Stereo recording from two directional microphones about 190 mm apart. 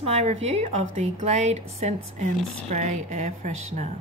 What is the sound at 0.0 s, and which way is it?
Speech, 35° right (ahead or behind).